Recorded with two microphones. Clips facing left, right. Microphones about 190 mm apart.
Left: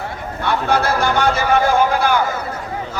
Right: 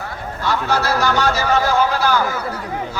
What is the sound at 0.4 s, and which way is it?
A man's voice, 55° left (ahead or behind).